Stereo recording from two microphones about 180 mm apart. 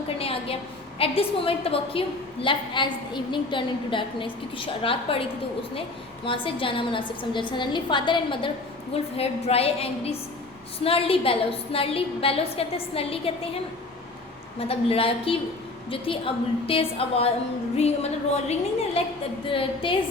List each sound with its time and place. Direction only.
0.2 s a sound: 30° left (ahead or behind)
0.9 s a woman's voice: 30° left (ahead or behind)
6.2 s a woman's voice: 30° left (ahead or behind)
14.7 s a woman's voice: 30° left (ahead or behind)